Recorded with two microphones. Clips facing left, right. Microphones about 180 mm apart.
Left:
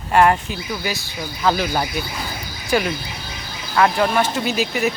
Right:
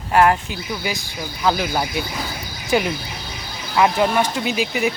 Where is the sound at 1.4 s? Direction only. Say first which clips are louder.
Left 1 dB; 10° right (ahead or behind).